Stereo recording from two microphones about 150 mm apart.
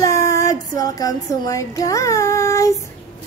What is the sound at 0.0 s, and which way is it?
Child singing, 20° left (ahead or behind).